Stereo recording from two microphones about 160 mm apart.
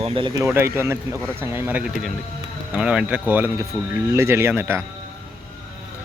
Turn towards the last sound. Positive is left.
turn(degrees=-15)  # may be behind; listen again after turning